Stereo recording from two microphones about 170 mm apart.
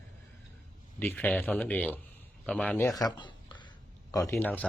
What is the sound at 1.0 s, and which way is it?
Speech, 10° left (ahead or behind).